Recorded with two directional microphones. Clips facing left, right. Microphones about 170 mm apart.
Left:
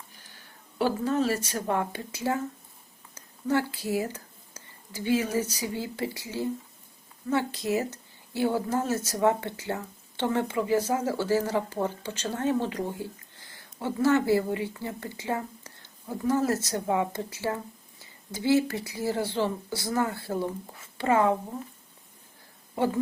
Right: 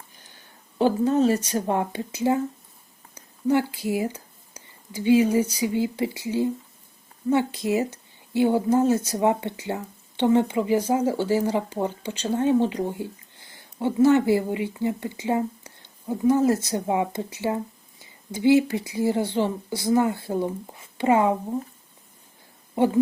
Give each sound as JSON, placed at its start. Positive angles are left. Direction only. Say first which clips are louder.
{"t": 0.8, "sound": "speech", "louder": "right 6 dB", "side_deg": -20}
{"t": 22.8, "sound": "speech", "louder": "right 5 dB", "side_deg": -20}